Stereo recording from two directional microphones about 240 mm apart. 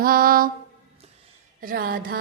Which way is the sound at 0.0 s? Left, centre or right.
Right.